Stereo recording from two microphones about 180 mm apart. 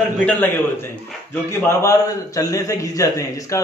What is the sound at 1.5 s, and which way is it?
A man's voice, 15° left (ahead or behind).